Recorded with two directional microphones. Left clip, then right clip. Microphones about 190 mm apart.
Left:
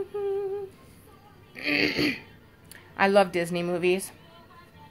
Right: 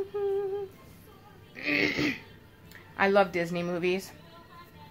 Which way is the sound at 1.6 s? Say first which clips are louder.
Left 2 dB; 35° left (ahead or behind).